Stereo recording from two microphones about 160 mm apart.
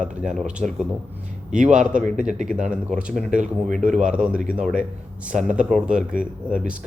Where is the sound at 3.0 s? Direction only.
5° right (ahead or behind).